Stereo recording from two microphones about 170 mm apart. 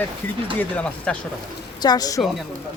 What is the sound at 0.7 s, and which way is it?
Speech, 5° left (ahead or behind).